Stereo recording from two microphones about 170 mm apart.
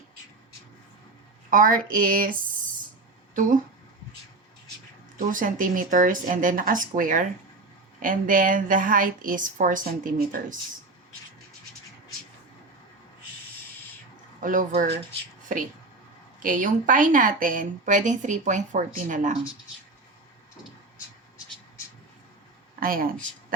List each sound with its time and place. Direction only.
1.5 s speech: 55° right (ahead or behind)
5.1 s speech: 50° right (ahead or behind)
14.4 s speech: 50° right (ahead or behind)
16.4 s speech: 50° right (ahead or behind)
22.8 s speech: 55° right (ahead or behind)